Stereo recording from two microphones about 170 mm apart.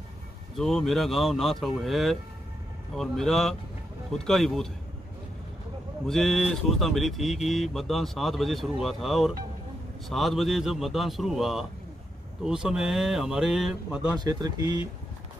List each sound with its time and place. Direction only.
0.6 s speech: centre (ahead or behind)
6.0 s speech: centre (ahead or behind)
14.1 s speech: 25° right (ahead or behind)